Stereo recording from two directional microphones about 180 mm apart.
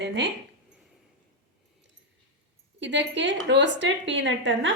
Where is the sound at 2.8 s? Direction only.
85° right.